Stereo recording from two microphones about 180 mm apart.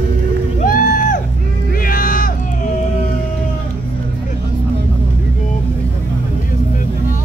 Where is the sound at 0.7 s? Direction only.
50° left (ahead or behind).